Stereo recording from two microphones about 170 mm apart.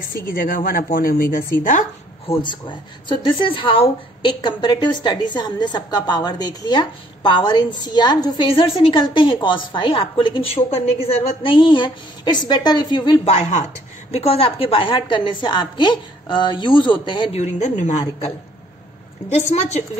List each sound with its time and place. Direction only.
0.1 s speech: 55° left (ahead or behind)
2.2 s a woman's voice: 30° left (ahead or behind)
17.4 s speech: 40° left (ahead or behind)
19.2 s speech: 40° left (ahead or behind)